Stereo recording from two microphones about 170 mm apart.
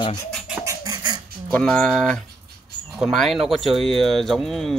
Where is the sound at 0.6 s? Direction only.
20° right (ahead or behind).